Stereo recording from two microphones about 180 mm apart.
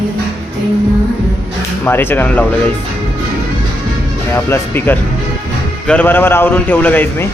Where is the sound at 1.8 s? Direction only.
10° left (ahead or behind).